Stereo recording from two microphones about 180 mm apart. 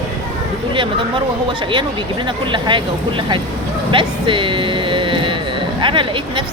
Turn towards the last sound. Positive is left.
turn(degrees=-30)  # may be behind; listen again after turning